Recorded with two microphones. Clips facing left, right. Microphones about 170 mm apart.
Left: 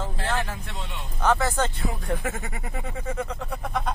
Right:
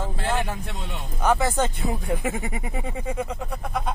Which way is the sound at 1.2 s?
15° right (ahead or behind).